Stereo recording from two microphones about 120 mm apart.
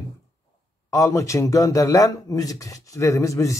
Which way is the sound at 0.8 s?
25° left (ahead or behind).